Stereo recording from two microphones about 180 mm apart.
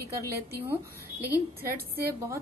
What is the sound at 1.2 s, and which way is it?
Speech, 10° right (ahead or behind).